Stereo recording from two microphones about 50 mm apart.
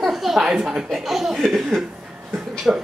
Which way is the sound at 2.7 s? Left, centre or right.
Centre.